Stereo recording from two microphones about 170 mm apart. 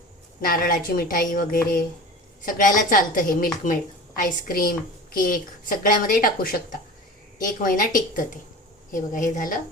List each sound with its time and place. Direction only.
0.4 s a woman's voice: 55° left (ahead or behind)